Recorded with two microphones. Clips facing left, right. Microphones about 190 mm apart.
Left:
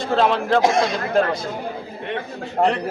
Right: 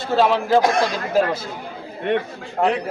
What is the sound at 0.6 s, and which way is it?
Speech, 25° left (ahead or behind).